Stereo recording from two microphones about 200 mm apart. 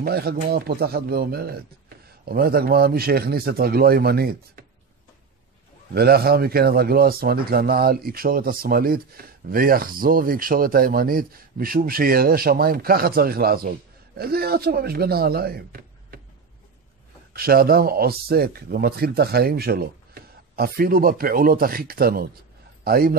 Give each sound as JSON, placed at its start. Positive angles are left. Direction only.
{"t": 0.0, "sound": "speech", "side_deg": -50}
{"t": 5.9, "sound": "speech", "side_deg": -50}
{"t": 17.3, "sound": "speech", "side_deg": -50}